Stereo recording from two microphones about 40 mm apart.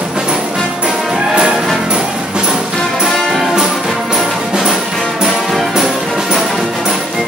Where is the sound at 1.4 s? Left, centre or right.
Centre.